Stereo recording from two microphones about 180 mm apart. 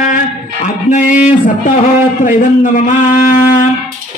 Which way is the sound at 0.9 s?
45° left (ahead or behind).